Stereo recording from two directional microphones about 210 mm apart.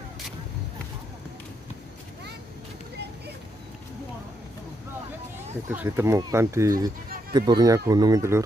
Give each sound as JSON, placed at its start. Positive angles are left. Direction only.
{"t": 5.7, "sound": "speech", "side_deg": -10}